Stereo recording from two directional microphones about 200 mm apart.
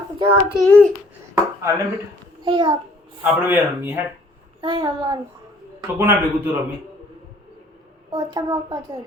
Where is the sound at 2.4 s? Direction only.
25° right (ahead or behind).